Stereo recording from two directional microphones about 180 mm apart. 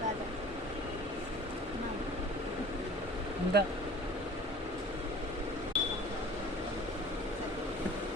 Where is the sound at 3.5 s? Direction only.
65° right (ahead or behind).